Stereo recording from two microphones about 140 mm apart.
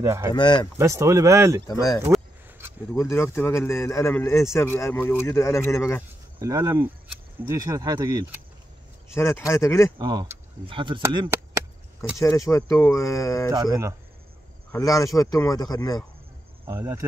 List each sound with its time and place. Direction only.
0.0 s speech: 20° right (ahead or behind)
0.3 s speech: 35° left (ahead or behind)
0.7 s speech: 20° right (ahead or behind)
1.7 s speech: 25° left (ahead or behind)
6.4 s speech: 25° right (ahead or behind)
9.1 s speech: 20° left (ahead or behind)
9.9 s speech: 30° right (ahead or behind)
12.2 s speech: 20° left (ahead or behind)
14.7 s speech: 25° left (ahead or behind)
16.6 s speech: 20° right (ahead or behind)